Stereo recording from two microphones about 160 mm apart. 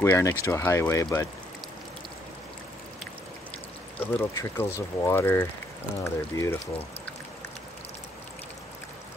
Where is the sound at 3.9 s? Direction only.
15° left (ahead or behind).